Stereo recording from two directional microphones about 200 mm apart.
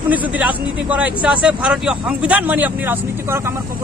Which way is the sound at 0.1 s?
5° right (ahead or behind).